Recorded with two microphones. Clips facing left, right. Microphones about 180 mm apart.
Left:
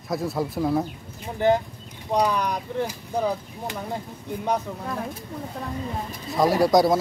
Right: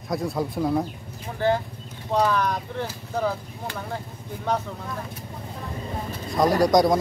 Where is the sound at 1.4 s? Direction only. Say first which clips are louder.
Left 2 dB; 20° left (ahead or behind).